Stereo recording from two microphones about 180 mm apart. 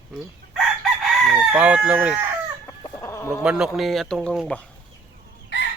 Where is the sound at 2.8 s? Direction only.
20° left (ahead or behind).